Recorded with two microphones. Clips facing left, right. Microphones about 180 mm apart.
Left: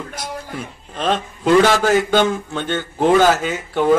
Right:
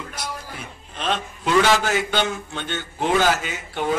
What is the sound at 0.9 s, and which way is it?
A man's voice, 45° left (ahead or behind).